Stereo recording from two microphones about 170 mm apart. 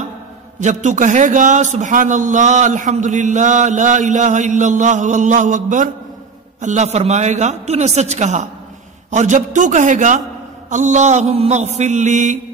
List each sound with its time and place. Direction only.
0.6 s a man's voice: 45° right (ahead or behind)